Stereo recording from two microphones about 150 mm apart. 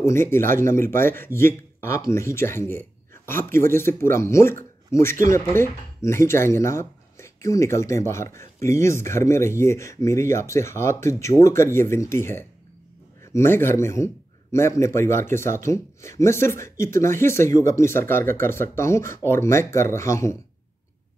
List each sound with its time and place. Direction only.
0.0 s a man's voice: 15° left (ahead or behind)